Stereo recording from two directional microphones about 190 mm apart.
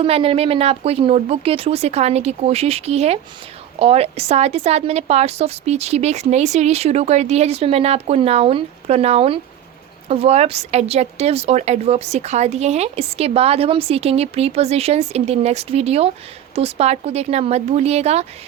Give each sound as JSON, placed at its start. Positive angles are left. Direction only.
{"t": 0.0, "sound": "speech", "side_deg": -30}